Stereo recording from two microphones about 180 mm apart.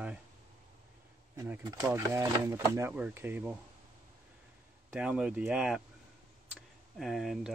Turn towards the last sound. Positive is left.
turn(degrees=0)  # may be behind; listen again after turning